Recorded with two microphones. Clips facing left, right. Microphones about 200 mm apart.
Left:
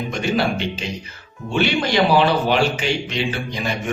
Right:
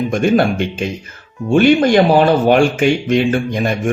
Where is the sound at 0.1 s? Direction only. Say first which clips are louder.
Right 6 dB; 50° right (ahead or behind).